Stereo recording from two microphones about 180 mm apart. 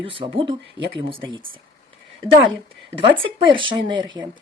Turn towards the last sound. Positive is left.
turn(degrees=-25)  # may be behind; listen again after turning